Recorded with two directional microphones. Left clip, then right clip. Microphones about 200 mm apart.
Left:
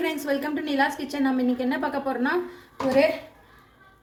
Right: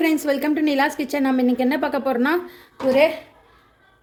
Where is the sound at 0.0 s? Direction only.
40° right (ahead or behind).